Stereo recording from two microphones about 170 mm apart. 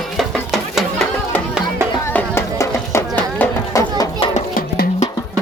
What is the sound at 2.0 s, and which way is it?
Music, 10° left (ahead or behind).